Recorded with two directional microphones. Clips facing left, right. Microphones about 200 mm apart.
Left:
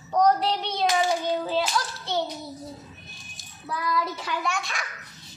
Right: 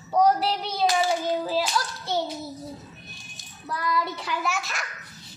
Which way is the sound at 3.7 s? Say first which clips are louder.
Even; centre (ahead or behind).